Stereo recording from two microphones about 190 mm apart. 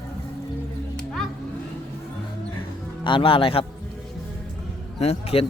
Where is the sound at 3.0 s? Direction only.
25° left (ahead or behind).